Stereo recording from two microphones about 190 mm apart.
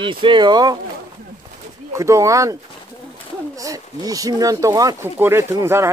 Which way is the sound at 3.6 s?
20° right (ahead or behind).